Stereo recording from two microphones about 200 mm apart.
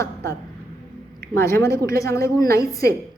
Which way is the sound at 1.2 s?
15° left (ahead or behind).